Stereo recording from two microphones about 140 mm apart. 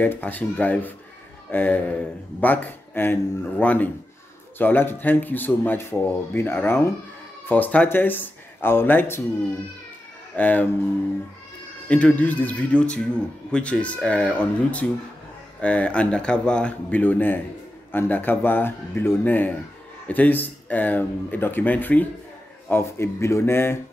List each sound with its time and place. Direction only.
0.0 s a man's voice: 10° left (ahead or behind)
10.3 s a man's voice: 10° left (ahead or behind)
11.9 s a man's voice: 10° left (ahead or behind)